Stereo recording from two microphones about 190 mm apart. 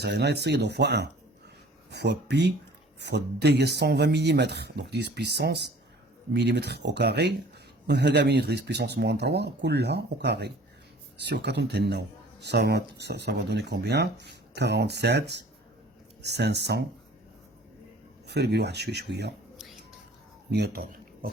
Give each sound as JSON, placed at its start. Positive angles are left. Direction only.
{"t": 0.0, "sound": "speech", "side_deg": -60}
{"t": 18.3, "sound": "speech", "side_deg": -65}
{"t": 20.5, "sound": "speech", "side_deg": -55}